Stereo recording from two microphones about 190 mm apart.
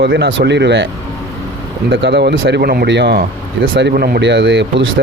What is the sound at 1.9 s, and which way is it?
Speech, 65° right (ahead or behind).